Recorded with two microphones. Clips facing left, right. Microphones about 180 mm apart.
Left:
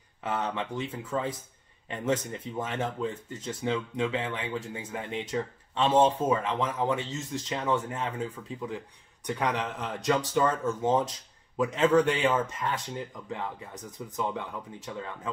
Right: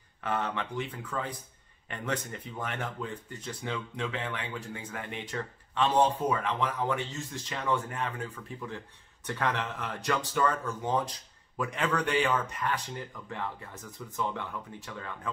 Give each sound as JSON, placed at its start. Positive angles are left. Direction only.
{"t": 0.2, "sound": "speech", "side_deg": 20}